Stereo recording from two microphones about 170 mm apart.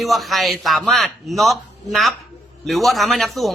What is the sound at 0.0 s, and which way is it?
A man's voice, centre (ahead or behind).